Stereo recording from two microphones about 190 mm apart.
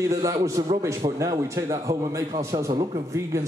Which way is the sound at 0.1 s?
15° right (ahead or behind).